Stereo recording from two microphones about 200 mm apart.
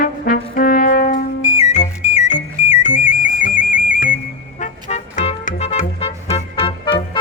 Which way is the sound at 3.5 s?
45° left (ahead or behind).